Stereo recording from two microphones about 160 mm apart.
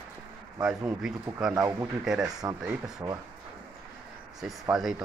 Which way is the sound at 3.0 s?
25° right (ahead or behind).